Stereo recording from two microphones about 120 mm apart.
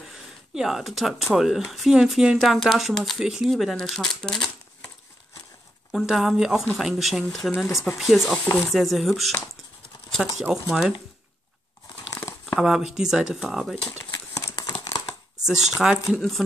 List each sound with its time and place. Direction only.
0.0 s speech: centre (ahead or behind)
5.9 s speech: centre (ahead or behind)
10.5 s speech: 5° right (ahead or behind)
12.1 s crumpling: 25° left (ahead or behind)
12.5 s speech: 5° right (ahead or behind)
13.8 s a sound: 25° left (ahead or behind)
14.5 s crumpling: 35° left (ahead or behind)
15.4 s speech: 5° right (ahead or behind)